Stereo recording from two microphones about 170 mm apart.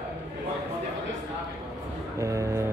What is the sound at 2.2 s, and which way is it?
Music, 15° right (ahead or behind).